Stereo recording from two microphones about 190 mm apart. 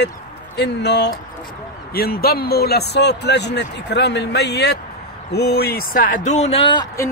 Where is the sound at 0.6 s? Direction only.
65° left (ahead or behind); by 7.1 s 20° left (ahead or behind).